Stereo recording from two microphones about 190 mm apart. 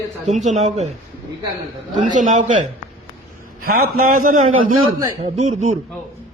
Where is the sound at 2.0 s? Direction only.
40° right (ahead or behind).